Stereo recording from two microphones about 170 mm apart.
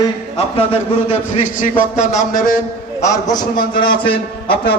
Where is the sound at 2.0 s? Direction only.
Centre (ahead or behind).